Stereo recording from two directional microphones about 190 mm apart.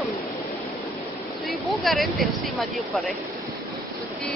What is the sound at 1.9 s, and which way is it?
Speech, centre (ahead or behind).